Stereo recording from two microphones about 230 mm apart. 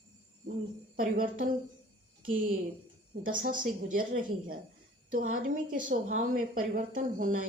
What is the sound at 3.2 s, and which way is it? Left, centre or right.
Speech, right.